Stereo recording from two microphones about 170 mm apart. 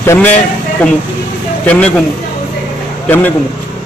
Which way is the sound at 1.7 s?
10° left (ahead or behind).